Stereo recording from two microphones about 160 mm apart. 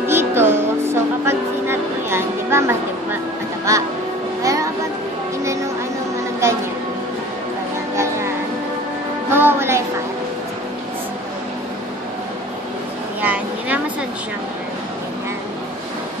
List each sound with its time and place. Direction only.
0.0 s music: 15° right (ahead or behind)
3.7 s speech: 20° right (ahead or behind)
4.4 s music: 20° right (ahead or behind)
7.9 s music: 15° right (ahead or behind)
9.3 s music: 15° right (ahead or behind)
13.2 s a sound: 10° right (ahead or behind)